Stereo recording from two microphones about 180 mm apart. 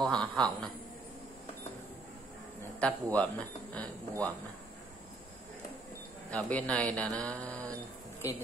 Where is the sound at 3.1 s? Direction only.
10° left (ahead or behind).